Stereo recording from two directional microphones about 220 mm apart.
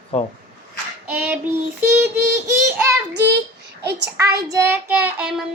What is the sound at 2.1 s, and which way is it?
Speech, 10° right (ahead or behind).